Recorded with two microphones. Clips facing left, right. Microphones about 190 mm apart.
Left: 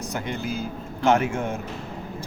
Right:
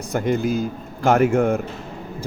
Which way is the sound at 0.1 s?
45° right (ahead or behind).